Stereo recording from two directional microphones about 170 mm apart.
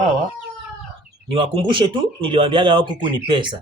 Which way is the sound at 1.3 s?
30° right (ahead or behind).